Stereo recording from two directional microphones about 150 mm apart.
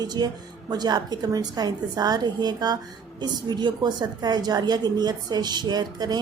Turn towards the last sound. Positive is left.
turn(degrees=-25)  # may be behind; listen again after turning